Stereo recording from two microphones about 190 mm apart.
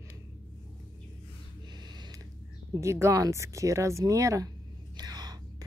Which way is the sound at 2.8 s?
15° right (ahead or behind).